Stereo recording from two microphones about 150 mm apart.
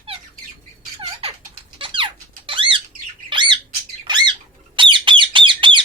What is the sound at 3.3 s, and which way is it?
Squawk, 30° right (ahead or behind).